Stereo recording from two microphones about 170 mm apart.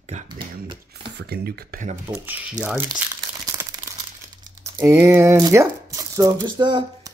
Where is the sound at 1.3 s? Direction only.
60° right (ahead or behind).